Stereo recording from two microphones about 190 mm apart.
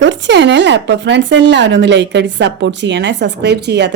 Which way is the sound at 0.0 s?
70° right (ahead or behind).